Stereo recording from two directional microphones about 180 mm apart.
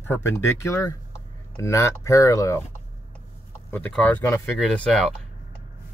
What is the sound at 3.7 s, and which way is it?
Speech, 10° left (ahead or behind).